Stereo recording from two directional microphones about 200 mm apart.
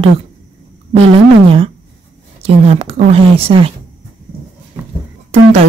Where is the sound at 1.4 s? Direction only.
30° right (ahead or behind).